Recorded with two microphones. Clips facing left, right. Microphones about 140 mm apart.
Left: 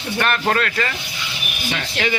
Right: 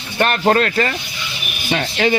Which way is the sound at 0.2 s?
30° right (ahead or behind).